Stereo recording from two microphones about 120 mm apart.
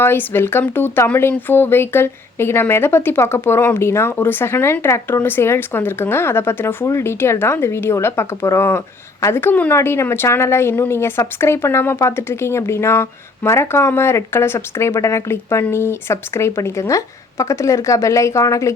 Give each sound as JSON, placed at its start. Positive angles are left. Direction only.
{"t": 0.0, "sound": "a woman's voice", "side_deg": 20}